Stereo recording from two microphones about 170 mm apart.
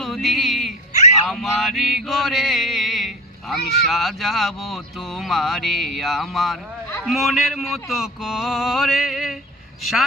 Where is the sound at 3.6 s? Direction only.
65° left (ahead or behind).